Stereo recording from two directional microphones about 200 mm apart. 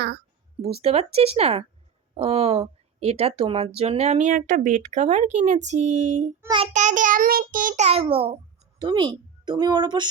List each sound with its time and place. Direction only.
0.6 s a woman's voice: 30° right (ahead or behind)